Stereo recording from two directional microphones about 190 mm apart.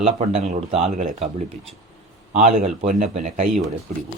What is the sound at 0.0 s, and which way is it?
Speech, 35° right (ahead or behind).